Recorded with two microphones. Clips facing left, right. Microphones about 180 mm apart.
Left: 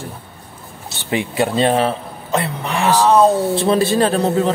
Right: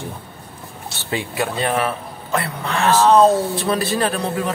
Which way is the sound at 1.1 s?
25° left (ahead or behind).